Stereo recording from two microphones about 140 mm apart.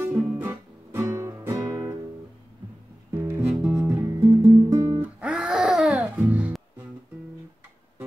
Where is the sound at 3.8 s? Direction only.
15° right (ahead or behind).